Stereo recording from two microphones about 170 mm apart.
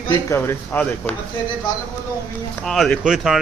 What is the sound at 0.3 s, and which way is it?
Speech, 15° left (ahead or behind).